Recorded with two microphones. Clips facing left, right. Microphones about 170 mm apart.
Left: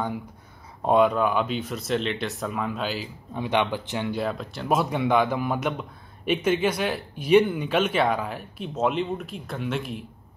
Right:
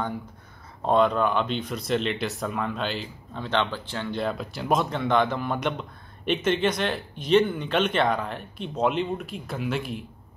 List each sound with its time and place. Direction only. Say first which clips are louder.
0.8 s speech: left 1 dB; 10° left (ahead or behind)
4.2 s speech: even; centre (ahead or behind)